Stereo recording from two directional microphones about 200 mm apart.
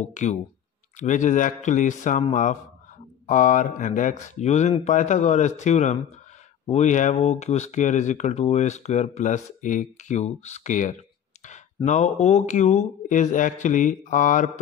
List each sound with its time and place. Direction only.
0.1 s speech: 35° left (ahead or behind)
3.3 s speech: 40° left (ahead or behind)